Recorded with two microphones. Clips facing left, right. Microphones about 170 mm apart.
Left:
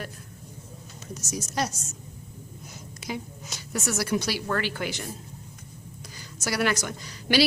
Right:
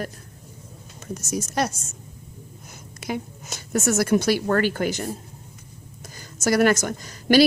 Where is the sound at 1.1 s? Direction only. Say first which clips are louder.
Right 5 dB; 55° right (ahead or behind).